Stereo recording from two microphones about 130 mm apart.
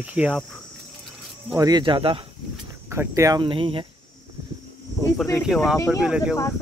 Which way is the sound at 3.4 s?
40° right (ahead or behind).